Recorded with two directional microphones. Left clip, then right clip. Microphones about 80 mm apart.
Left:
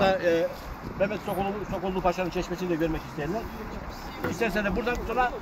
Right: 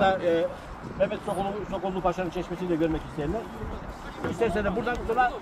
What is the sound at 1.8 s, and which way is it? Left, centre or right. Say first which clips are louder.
Speech: left 1 dB; left.